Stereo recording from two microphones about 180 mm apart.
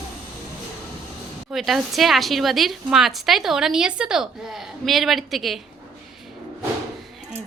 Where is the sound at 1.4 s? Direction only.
Centre (ahead or behind).